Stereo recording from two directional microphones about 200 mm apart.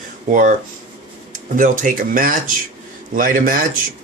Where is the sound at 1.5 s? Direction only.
40° right (ahead or behind).